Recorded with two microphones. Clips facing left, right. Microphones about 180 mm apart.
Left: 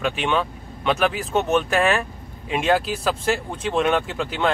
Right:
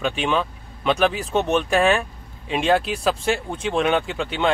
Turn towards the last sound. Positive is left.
turn(degrees=0)  # may be behind; listen again after turning